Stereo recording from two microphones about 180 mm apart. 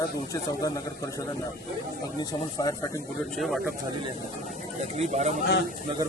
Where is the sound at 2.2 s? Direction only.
20° left (ahead or behind).